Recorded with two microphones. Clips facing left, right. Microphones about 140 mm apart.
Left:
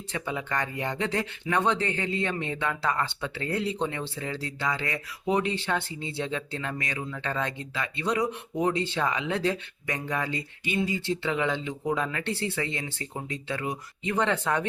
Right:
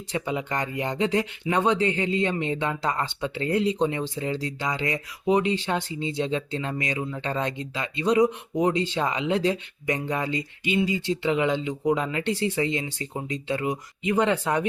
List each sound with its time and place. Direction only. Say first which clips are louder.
0.1 s speech: right 3 dB; 20° right (ahead or behind)